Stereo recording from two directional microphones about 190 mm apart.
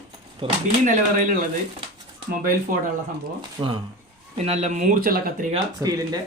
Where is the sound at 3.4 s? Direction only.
25° right (ahead or behind).